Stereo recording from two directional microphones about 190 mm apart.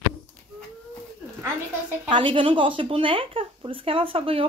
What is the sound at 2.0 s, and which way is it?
Speech, 25° right (ahead or behind).